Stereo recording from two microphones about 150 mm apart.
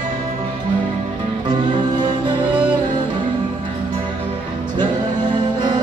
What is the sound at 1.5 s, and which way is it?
Music, 30° right (ahead or behind).